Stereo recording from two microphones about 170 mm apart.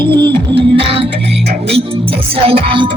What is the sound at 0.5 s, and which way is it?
Music, 30° right (ahead or behind).